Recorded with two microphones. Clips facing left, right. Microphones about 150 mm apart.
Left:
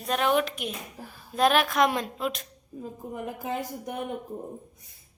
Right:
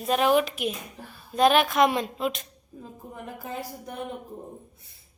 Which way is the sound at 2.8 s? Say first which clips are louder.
Left 5 dB; 15° left (ahead or behind).